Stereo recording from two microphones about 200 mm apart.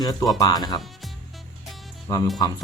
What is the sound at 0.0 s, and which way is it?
Speech, 20° left (ahead or behind).